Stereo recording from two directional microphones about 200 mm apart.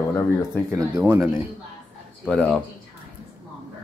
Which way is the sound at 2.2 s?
5° left (ahead or behind).